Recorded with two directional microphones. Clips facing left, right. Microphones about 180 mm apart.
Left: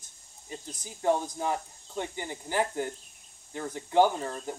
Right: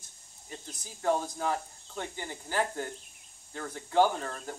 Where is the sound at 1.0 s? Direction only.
15° left (ahead or behind).